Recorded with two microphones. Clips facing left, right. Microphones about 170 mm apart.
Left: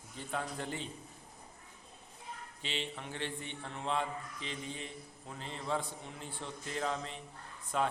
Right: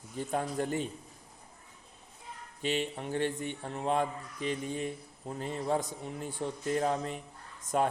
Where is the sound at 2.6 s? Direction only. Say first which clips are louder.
Right 9 dB; 45° right (ahead or behind).